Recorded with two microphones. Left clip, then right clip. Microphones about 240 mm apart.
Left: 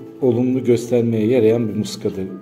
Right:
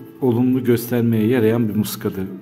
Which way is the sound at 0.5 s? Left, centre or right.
Right.